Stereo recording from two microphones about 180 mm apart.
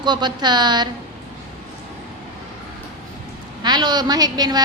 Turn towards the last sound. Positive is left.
turn(degrees=-20)  # may be behind; listen again after turning